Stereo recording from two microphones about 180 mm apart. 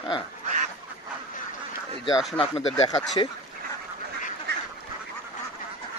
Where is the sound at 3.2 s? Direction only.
25° left (ahead or behind).